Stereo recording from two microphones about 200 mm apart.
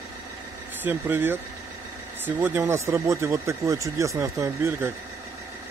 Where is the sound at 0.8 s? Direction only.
10° right (ahead or behind).